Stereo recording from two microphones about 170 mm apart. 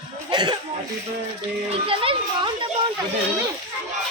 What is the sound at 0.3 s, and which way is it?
Cough, 25° right (ahead or behind).